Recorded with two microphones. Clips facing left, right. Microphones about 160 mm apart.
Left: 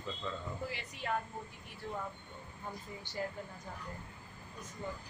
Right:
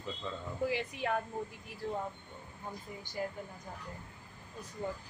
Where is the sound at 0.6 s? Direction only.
65° right (ahead or behind).